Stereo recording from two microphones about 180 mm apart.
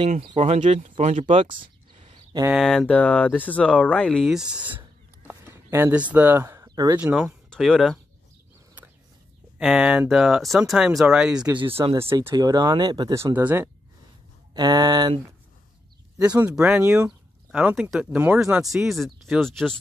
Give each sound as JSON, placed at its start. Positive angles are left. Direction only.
{"t": 0.3, "sound": "speech", "side_deg": -35}
{"t": 1.4, "sound": "a sound", "side_deg": -30}
{"t": 2.5, "sound": "speech", "side_deg": 0}
{"t": 7.0, "sound": "speech", "side_deg": -5}
{"t": 9.6, "sound": "speech", "side_deg": -5}
{"t": 11.4, "sound": "speech", "side_deg": -25}
{"t": 11.8, "sound": "speech", "side_deg": -15}
{"t": 14.5, "sound": "speech", "side_deg": -20}
{"t": 16.2, "sound": "speech", "side_deg": -5}